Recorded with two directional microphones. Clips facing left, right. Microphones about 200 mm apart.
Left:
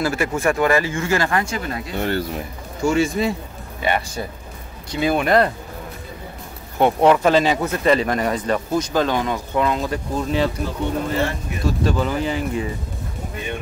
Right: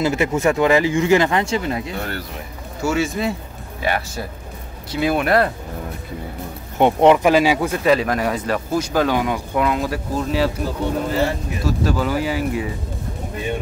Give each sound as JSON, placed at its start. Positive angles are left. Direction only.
{"t": 0.0, "sound": "speech", "side_deg": -20}
{"t": 2.0, "sound": "speech", "side_deg": 25}
{"t": 2.8, "sound": "speech", "side_deg": -5}
{"t": 6.8, "sound": "speech", "side_deg": -20}
{"t": 11.6, "sound": "speech", "side_deg": -5}